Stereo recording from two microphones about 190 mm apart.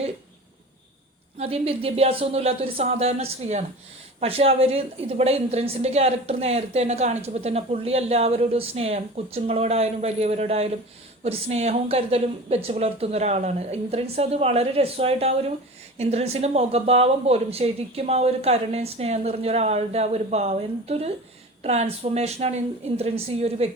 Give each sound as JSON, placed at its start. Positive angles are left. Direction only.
{"t": 1.4, "sound": "a woman's voice", "side_deg": -30}